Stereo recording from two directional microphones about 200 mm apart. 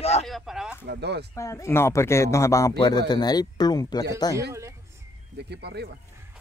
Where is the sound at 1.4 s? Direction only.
15° left (ahead or behind).